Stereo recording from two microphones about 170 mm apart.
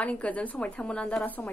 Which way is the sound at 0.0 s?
5° left (ahead or behind).